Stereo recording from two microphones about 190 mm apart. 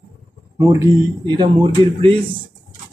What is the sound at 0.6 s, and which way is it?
Speech, 15° right (ahead or behind).